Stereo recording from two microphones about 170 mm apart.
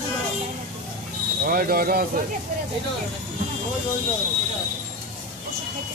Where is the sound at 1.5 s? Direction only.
60° right (ahead or behind).